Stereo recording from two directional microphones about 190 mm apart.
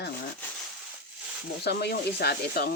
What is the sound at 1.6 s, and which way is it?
Speech, 60° left (ahead or behind).